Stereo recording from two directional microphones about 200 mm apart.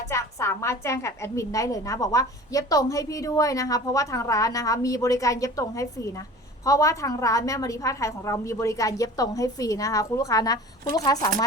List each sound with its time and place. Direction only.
0.1 s a woman's voice: 15° left (ahead or behind)